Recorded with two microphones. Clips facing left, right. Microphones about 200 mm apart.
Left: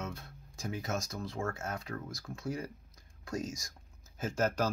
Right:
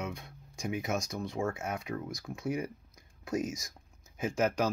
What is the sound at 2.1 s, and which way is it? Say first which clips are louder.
Speech: right 3 dB; centre (ahead or behind).